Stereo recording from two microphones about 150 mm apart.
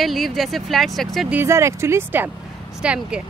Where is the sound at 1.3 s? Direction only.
15° right (ahead or behind).